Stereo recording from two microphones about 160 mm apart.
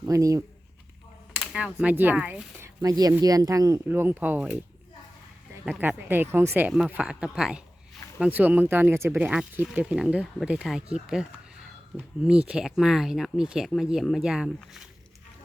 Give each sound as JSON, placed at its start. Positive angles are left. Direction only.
{"t": 0.0, "sound": "speech", "side_deg": -20}
{"t": 1.4, "sound": "speech", "side_deg": -5}
{"t": 3.0, "sound": "speech", "side_deg": -20}
{"t": 5.8, "sound": "speech", "side_deg": -10}